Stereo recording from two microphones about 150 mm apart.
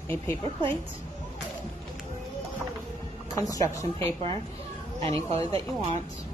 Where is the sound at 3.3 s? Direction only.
20° left (ahead or behind).